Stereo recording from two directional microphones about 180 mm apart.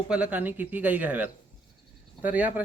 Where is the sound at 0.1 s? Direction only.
10° right (ahead or behind).